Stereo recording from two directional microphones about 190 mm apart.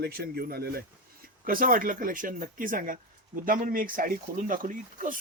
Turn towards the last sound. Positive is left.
turn(degrees=-45)  # may be behind; listen again after turning